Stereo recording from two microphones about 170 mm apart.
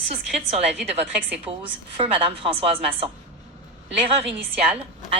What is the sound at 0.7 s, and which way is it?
Speech, 10° right (ahead or behind).